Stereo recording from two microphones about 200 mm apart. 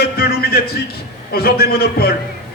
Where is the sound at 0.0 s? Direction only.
50° left (ahead or behind).